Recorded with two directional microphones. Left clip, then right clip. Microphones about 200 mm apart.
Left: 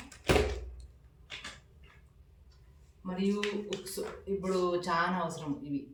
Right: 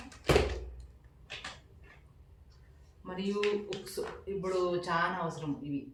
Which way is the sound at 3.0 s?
15° left (ahead or behind).